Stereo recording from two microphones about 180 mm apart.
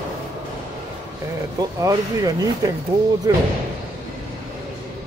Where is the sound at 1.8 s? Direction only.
20° right (ahead or behind).